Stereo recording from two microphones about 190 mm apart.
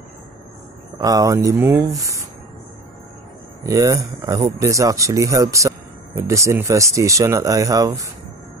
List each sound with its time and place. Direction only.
0.9 s speech: 20° right (ahead or behind)
3.6 s speech: 15° right (ahead or behind)